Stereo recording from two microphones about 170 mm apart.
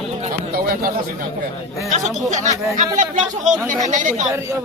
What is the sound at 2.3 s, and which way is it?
Speech, 45° right (ahead or behind).